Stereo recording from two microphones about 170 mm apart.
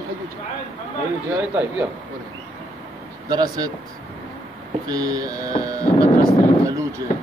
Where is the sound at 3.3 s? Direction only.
25° right (ahead or behind).